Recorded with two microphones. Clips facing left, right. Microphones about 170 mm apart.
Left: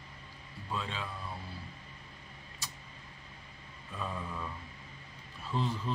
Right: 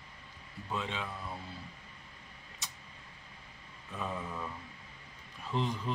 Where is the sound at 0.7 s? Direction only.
20° right (ahead or behind).